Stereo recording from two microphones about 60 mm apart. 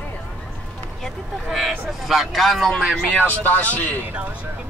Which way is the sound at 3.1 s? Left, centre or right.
Left.